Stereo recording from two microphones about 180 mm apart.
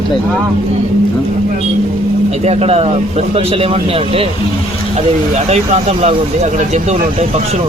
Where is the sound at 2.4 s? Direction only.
35° right (ahead or behind).